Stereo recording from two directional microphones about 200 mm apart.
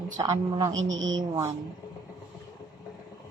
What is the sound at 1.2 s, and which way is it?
Speech, 15° right (ahead or behind).